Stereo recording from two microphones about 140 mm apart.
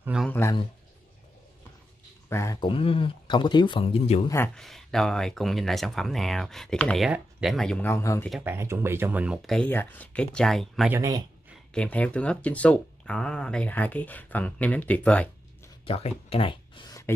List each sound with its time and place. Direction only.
0.0 s speech: 5° right (ahead or behind)
0.3 s speech: 15° left (ahead or behind)
2.2 s speech: 20° left (ahead or behind)
2.6 s speech: 40° left (ahead or behind)
4.6 s speech: 5° left (ahead or behind)
7.1 s speech: 10° right (ahead or behind)
7.5 s speech: 5° left (ahead or behind)
7.9 s speech: 20° left (ahead or behind)
8.5 s speech: 15° right (ahead or behind)
9.5 s speech: 10° left (ahead or behind)
10.9 s speech: 25° right (ahead or behind)
11.7 s speech: 10° left (ahead or behind)
15.8 s speech: 45° left (ahead or behind)